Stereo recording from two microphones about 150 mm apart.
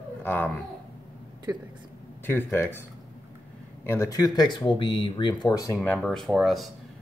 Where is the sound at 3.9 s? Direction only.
20° left (ahead or behind).